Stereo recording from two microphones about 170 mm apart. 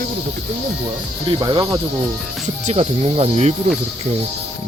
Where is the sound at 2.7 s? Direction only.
40° right (ahead or behind).